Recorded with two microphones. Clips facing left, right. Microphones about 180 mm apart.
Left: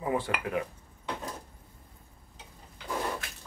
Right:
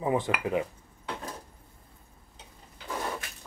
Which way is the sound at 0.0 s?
20° right (ahead or behind).